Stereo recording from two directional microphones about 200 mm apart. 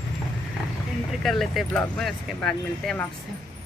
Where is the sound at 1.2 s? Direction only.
Centre (ahead or behind).